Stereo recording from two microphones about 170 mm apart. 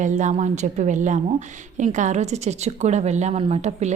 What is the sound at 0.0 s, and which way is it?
A woman's voice, 45° right (ahead or behind).